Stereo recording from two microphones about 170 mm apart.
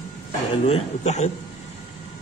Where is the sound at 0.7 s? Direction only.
40° left (ahead or behind).